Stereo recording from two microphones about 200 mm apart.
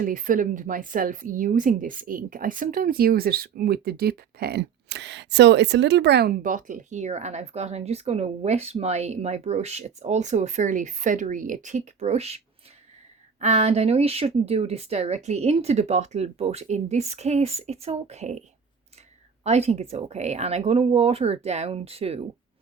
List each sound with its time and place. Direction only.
0.0 s speech: 40° right (ahead or behind)
13.4 s speech: 35° right (ahead or behind)
19.5 s speech: 30° right (ahead or behind)